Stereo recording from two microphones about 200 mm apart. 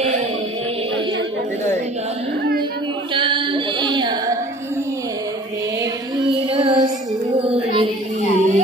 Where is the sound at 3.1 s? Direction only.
25° right (ahead or behind).